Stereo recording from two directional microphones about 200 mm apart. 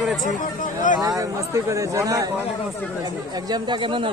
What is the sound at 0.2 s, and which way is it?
Speech, 40° left (ahead or behind).